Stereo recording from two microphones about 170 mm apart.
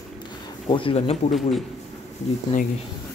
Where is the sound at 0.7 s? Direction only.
30° left (ahead or behind).